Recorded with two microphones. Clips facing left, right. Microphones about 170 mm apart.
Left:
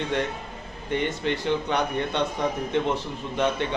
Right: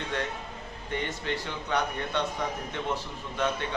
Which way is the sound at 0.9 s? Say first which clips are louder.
Left 6 dB; 20° left (ahead or behind).